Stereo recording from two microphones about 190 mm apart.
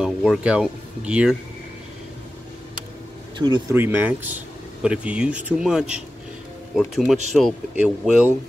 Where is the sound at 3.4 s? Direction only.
25° right (ahead or behind).